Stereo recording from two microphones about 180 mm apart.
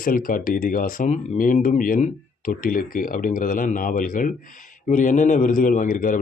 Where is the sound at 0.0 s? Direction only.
50° left (ahead or behind).